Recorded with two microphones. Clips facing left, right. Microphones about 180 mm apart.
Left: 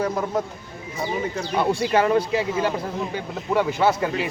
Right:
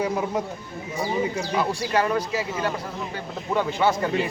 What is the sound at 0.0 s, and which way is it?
Speech, 10° right (ahead or behind).